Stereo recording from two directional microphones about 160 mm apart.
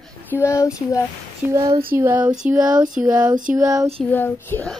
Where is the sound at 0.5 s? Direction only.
20° left (ahead or behind).